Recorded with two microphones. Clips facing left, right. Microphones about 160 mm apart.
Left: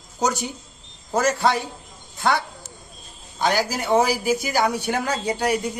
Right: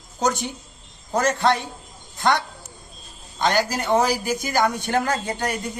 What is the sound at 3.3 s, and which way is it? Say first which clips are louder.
A man's voice: right 1 dB; 10° left (ahead or behind).